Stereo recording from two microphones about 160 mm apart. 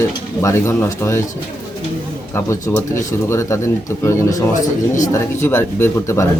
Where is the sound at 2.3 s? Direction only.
15° left (ahead or behind).